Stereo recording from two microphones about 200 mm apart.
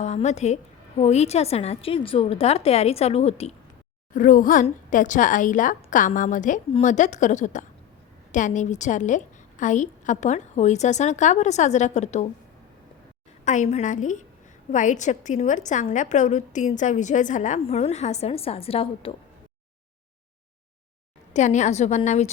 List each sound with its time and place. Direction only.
0.0 s a woman's voice: 35° left (ahead or behind)
4.1 s a woman's voice: 40° left (ahead or behind)
13.4 s a woman's voice: 40° left (ahead or behind)
21.3 s a woman's voice: 35° left (ahead or behind)